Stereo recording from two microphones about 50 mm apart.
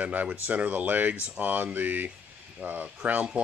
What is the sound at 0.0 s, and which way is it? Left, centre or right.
Speech, right.